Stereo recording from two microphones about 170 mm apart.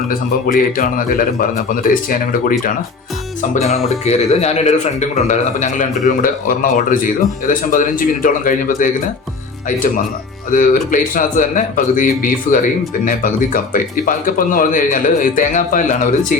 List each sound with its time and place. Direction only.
0.1 s a man's voice: 55° left (ahead or behind)
3.5 s speech: 40° left (ahead or behind)